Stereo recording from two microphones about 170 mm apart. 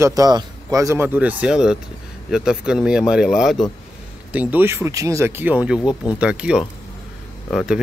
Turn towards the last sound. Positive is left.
turn(degrees=-5)  # may be behind; listen again after turning